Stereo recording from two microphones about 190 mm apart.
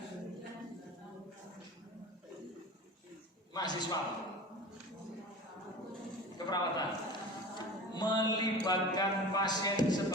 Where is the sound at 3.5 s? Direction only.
20° left (ahead or behind).